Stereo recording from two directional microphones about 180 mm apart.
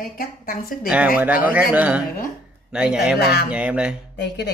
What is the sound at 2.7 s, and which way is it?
Speech, 5° right (ahead or behind).